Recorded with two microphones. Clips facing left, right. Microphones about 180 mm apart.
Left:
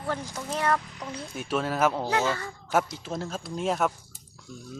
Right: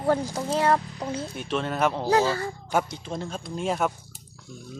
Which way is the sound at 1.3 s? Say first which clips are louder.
Even; 5° left (ahead or behind).